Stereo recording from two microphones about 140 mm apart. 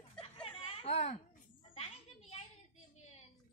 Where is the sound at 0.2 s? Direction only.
40° left (ahead or behind).